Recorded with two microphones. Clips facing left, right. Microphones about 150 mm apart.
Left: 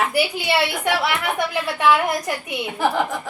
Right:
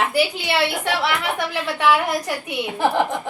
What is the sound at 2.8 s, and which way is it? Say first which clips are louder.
Speech: right 1 dB; 20° right (ahead or behind).